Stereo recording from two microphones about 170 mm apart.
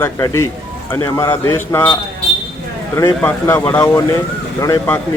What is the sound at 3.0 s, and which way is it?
Speech, 15° left (ahead or behind).